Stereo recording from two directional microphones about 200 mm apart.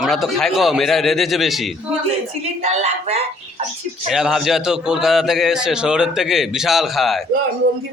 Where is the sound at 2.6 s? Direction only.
35° right (ahead or behind).